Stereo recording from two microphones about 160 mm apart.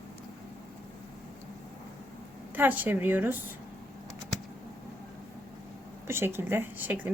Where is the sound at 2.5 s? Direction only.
10° right (ahead or behind).